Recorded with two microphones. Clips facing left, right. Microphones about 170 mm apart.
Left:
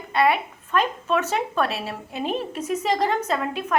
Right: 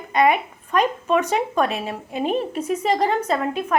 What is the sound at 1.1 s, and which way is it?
A woman's voice, 10° right (ahead or behind).